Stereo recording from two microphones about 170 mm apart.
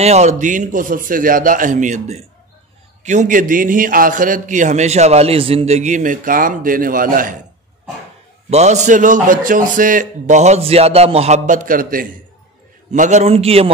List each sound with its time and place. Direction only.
0.0 s a man's voice: 40° right (ahead or behind)
8.5 s a man's voice: 40° right (ahead or behind)